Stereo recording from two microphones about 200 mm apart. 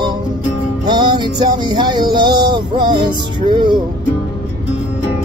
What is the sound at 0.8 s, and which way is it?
Music, 20° right (ahead or behind).